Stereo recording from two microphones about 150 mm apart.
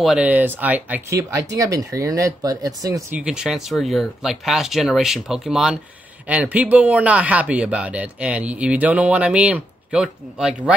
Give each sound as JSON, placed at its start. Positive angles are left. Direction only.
{"t": 0.0, "sound": "speech", "side_deg": -5}
{"t": 3.1, "sound": "speech", "side_deg": -5}